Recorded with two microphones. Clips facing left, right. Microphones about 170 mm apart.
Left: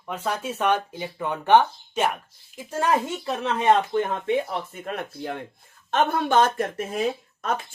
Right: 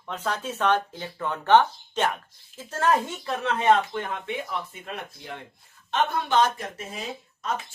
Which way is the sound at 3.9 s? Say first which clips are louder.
Left 8 dB; 45° left (ahead or behind).